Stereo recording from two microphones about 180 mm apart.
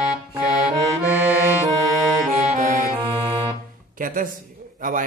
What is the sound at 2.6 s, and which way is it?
Music, 50° right (ahead or behind).